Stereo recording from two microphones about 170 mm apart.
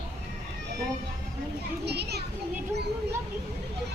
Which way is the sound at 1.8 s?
75° right (ahead or behind).